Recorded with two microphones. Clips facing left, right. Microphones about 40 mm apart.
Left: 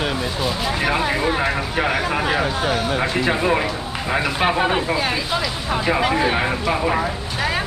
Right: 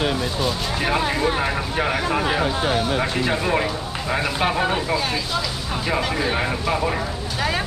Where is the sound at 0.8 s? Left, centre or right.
Centre.